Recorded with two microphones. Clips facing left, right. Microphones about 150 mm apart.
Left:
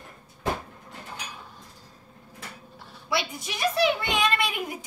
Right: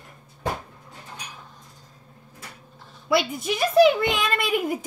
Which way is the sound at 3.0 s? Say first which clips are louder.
Right 7 dB; 55° right (ahead or behind).